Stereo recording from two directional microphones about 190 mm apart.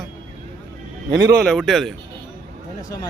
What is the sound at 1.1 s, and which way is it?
Speech, 20° right (ahead or behind).